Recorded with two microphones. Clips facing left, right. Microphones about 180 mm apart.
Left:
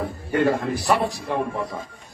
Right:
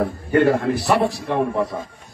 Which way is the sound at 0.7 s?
Centre (ahead or behind).